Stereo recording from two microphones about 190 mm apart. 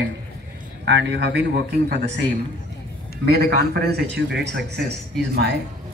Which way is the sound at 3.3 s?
55° right (ahead or behind).